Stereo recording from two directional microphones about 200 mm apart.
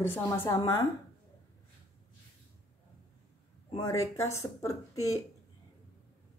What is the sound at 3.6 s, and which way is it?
A woman's voice, 15° left (ahead or behind).